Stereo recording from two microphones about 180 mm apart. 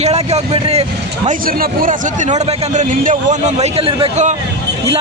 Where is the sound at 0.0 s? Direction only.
35° right (ahead or behind).